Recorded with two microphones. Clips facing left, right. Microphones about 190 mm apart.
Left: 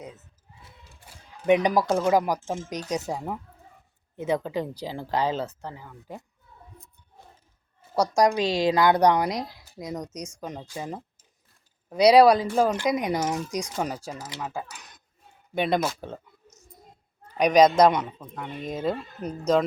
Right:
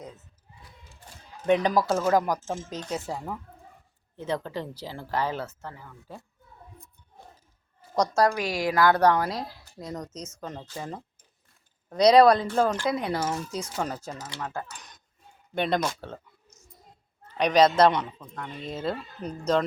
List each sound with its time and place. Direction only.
1.0 s a woman's voice: 15° left (ahead or behind)
7.9 s a woman's voice: 10° left (ahead or behind)
17.3 s a woman's voice: 10° left (ahead or behind)